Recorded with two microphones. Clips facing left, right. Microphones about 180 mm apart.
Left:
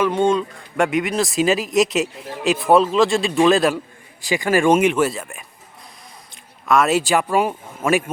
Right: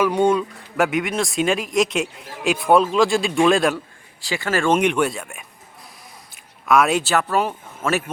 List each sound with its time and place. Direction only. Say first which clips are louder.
0.0 s speech: even; 10° right (ahead or behind)
4.3 s speech: left 4 dB; 15° left (ahead or behind)
6.3 s a sound: even; centre (ahead or behind)
7.0 s speech: left 2 dB; 10° left (ahead or behind)